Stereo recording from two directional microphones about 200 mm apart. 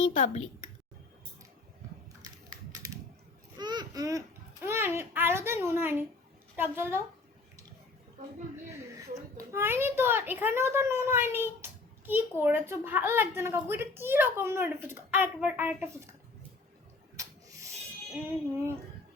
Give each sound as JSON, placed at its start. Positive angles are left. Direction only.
{"t": 0.0, "sound": "speech", "side_deg": 35}
{"t": 3.6, "sound": "a sound", "side_deg": -20}
{"t": 4.6, "sound": "a child's voice", "side_deg": -10}
{"t": 9.4, "sound": "a child's voice", "side_deg": -15}
{"t": 17.2, "sound": "rub", "side_deg": -15}